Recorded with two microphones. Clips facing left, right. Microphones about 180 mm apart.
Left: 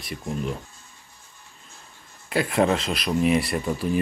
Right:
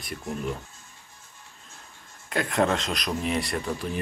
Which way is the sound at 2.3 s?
5° left (ahead or behind).